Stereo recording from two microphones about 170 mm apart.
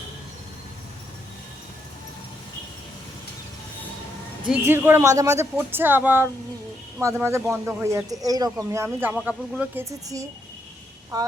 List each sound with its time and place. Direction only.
4.4 s speech: 10° right (ahead or behind)
11.1 s speech: 20° right (ahead or behind)